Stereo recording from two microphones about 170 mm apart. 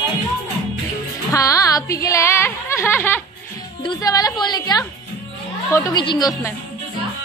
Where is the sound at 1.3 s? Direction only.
20° left (ahead or behind).